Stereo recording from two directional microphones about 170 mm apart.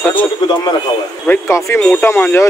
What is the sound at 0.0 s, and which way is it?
A man's voice, 10° left (ahead or behind).